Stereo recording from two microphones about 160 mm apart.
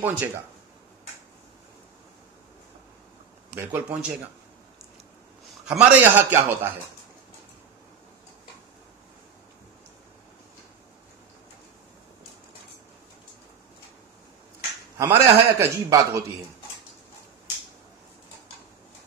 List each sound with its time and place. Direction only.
0.0 s a man's voice: 10° right (ahead or behind)
3.5 s a man's voice: 10° right (ahead or behind)
5.7 s a man's voice: 5° right (ahead or behind)
15.0 s a man's voice: 20° right (ahead or behind)